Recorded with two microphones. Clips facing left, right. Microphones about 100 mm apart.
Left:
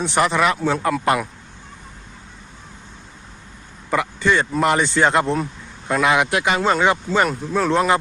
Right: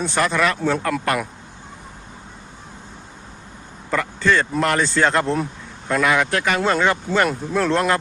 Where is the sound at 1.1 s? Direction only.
20° left (ahead or behind).